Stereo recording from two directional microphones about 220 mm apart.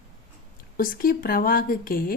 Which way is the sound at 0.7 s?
40° left (ahead or behind).